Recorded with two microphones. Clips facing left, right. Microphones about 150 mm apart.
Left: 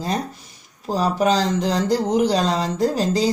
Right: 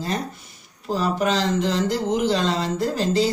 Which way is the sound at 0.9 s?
40° left (ahead or behind).